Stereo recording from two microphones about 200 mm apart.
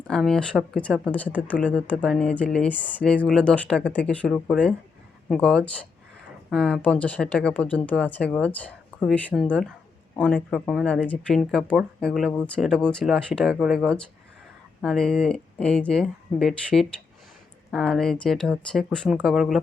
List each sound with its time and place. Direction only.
0.1 s speech: 5° left (ahead or behind)